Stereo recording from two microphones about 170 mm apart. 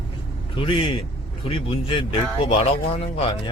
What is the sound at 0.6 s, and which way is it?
Speech, 30° left (ahead or behind).